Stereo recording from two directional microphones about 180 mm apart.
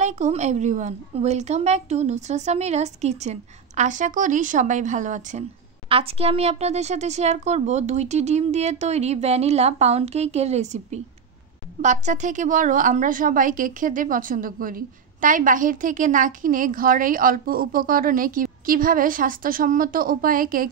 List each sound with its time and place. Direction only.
0.0 s a woman's voice: 40° right (ahead or behind)
5.9 s a woman's voice: 35° right (ahead or behind); by 20.7 s 50° right (ahead or behind)